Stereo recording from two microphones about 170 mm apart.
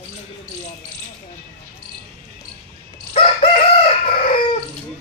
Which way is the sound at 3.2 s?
35° left (ahead or behind).